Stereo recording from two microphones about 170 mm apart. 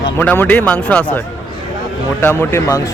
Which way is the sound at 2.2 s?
15° left (ahead or behind).